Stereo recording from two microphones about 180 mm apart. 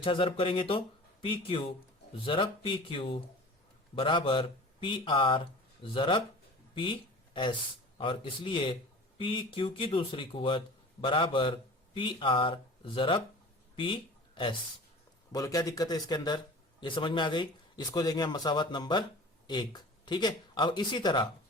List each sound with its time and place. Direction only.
0.0 s speech: 30° left (ahead or behind)
13.7 s a sound: 30° left (ahead or behind)
15.3 s speech: 20° left (ahead or behind)